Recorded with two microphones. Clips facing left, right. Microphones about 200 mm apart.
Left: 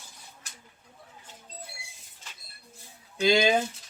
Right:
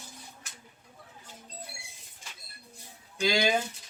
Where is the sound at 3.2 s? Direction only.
25° left (ahead or behind).